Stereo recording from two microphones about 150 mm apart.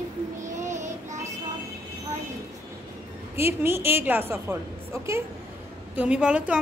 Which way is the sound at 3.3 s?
15° right (ahead or behind).